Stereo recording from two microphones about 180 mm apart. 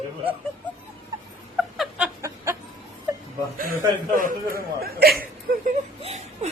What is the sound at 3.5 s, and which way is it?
Speech, 50° right (ahead or behind).